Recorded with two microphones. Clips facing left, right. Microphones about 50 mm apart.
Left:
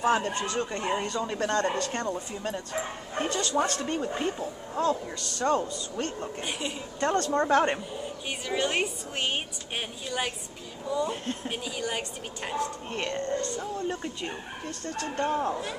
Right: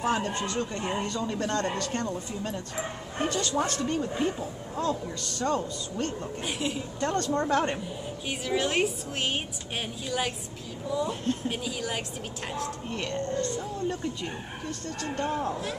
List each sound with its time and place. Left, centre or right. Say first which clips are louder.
0.0 s a woman's voice: left 2 dB; centre
3.8 s speech: right 1 dB; centre
6.0 s a woman's voice: right 1 dB; centre
7.1 s speech: left 3 dB; centre
8.3 s a woman's voice: right 1 dB; centre
12.9 s speech: even; centre